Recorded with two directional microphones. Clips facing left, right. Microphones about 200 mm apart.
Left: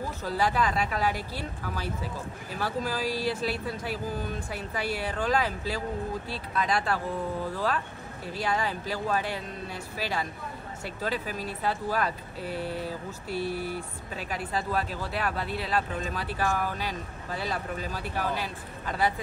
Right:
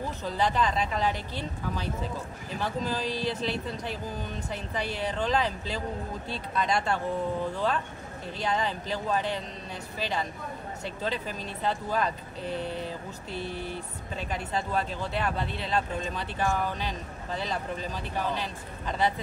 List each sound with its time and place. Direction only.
0.3 s speech: 5° left (ahead or behind)